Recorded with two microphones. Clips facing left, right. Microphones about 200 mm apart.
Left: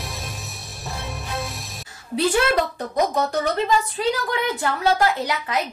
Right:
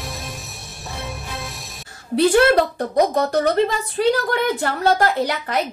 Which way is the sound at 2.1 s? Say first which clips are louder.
Right 5 dB; 55° right (ahead or behind).